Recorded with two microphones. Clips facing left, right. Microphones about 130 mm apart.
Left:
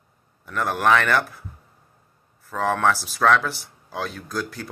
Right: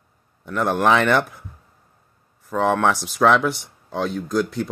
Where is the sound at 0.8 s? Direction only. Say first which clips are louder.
Right 1 dB; 20° right (ahead or behind).